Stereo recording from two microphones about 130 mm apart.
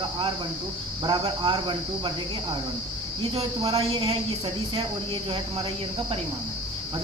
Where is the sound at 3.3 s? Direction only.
45° right (ahead or behind).